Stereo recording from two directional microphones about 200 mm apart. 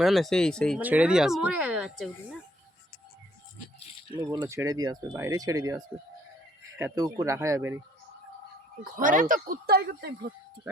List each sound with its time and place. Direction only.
0.0 s speech: centre (ahead or behind)
0.8 s speech: 10° right (ahead or behind)
4.1 s speech: 20° right (ahead or behind)
8.8 s speech: 40° right (ahead or behind)